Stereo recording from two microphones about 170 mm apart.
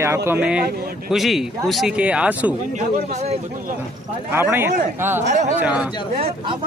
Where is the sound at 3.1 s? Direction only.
40° right (ahead or behind).